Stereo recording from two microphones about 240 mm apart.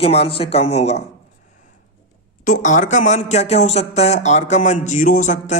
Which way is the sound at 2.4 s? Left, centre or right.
Left.